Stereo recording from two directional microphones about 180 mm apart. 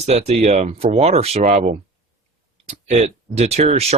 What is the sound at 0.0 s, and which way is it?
Speech, 35° right (ahead or behind).